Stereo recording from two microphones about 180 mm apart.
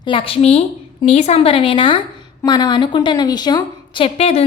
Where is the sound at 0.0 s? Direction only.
30° left (ahead or behind).